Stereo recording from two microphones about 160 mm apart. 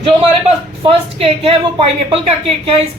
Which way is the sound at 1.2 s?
35° right (ahead or behind).